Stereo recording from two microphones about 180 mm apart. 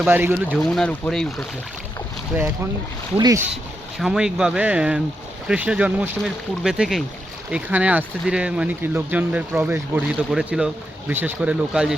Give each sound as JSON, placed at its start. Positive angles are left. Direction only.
{"t": 0.1, "sound": "speech", "side_deg": -10}
{"t": 0.6, "sound": "speech", "side_deg": 5}
{"t": 3.2, "sound": "speech", "side_deg": -20}
{"t": 3.9, "sound": "speech", "side_deg": 0}